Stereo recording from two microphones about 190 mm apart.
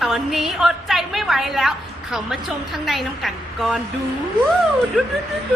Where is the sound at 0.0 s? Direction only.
Centre (ahead or behind).